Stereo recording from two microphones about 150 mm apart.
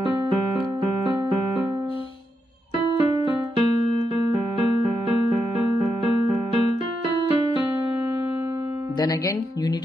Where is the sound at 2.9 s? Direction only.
35° right (ahead or behind).